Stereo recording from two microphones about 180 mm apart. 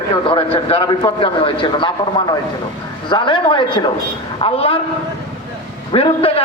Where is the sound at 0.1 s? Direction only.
30° left (ahead or behind).